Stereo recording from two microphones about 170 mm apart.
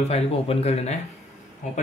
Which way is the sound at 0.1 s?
35° left (ahead or behind).